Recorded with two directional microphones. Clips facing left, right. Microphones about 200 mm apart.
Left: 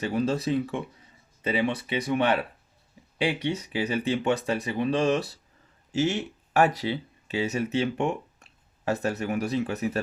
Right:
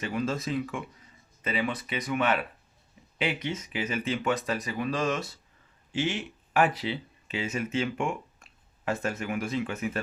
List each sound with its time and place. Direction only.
0.0 s speech: 35° left (ahead or behind)